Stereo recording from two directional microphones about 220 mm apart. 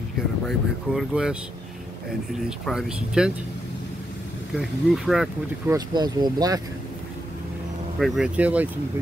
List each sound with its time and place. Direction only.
0.5 s speech: centre (ahead or behind)
2.6 s speech: centre (ahead or behind)
4.6 s speech: centre (ahead or behind)
5.7 s speech: 20° right (ahead or behind)
8.0 s speech: 5° right (ahead or behind)